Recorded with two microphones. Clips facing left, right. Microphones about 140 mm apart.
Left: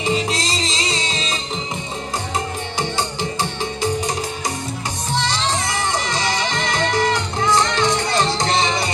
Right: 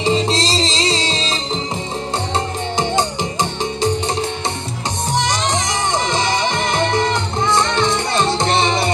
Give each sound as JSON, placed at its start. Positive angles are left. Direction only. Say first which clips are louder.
{"t": 0.0, "sound": "music", "louder": "right 4 dB", "side_deg": -30}
{"t": 5.1, "sound": "music", "louder": "right 2 dB", "side_deg": -15}